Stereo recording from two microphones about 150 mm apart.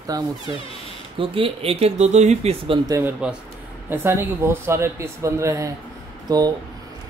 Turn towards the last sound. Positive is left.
turn(degrees=-25)  # may be behind; listen again after turning